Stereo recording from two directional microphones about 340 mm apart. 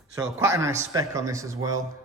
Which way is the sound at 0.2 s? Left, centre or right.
Centre.